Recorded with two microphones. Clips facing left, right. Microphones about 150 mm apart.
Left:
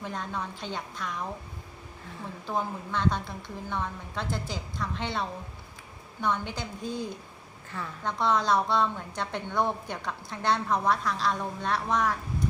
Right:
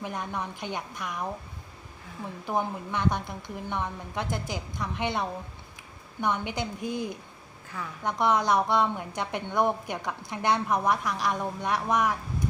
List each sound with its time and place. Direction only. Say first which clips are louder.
0.0 s a woman's voice: right 1 dB; 15° right (ahead or behind)
2.5 s a woman's voice: right 2 dB; 15° right (ahead or behind)